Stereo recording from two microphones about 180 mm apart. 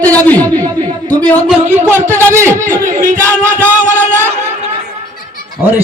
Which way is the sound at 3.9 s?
15° right (ahead or behind).